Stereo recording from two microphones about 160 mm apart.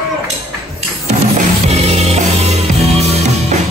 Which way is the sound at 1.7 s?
40° right (ahead or behind).